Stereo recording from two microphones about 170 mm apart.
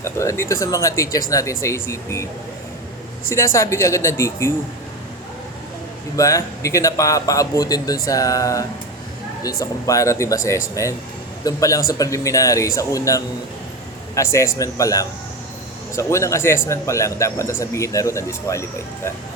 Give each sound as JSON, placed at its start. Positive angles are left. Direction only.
{"t": 0.0, "sound": "speech", "side_deg": 15}
{"t": 3.2, "sound": "speech", "side_deg": 15}
{"t": 6.1, "sound": "speech", "side_deg": 20}